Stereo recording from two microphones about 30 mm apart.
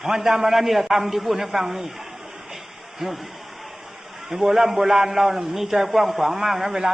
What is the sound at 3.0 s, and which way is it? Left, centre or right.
Speech, centre.